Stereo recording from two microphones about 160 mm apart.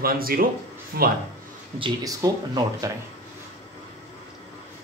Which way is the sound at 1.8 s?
25° right (ahead or behind).